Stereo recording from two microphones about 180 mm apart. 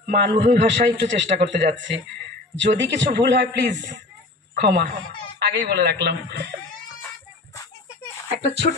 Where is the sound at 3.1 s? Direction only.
70° right (ahead or behind).